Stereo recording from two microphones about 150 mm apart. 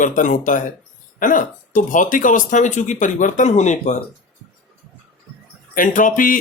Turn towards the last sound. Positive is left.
turn(degrees=65)  # may be behind; listen again after turning